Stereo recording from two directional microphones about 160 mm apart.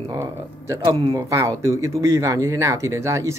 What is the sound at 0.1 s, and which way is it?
Speech, 20° right (ahead or behind).